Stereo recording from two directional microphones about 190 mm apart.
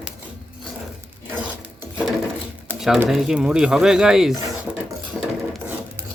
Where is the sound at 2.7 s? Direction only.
Centre (ahead or behind).